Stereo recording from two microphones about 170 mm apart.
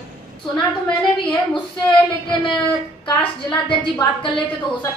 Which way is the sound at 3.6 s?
30° left (ahead or behind).